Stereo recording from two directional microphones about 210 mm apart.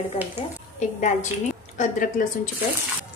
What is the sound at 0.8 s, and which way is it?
A woman's voice, 35° left (ahead or behind).